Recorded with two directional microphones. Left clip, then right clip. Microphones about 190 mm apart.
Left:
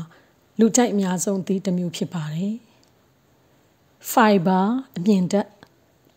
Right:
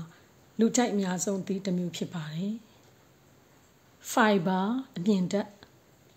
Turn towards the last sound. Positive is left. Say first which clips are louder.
# left 8 dB
turn(degrees=40)  # may be behind; listen again after turning